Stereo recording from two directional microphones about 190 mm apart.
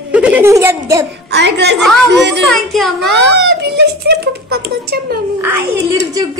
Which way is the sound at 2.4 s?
Centre (ahead or behind).